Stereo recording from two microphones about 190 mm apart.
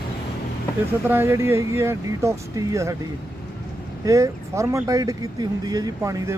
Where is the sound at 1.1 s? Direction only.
10° right (ahead or behind).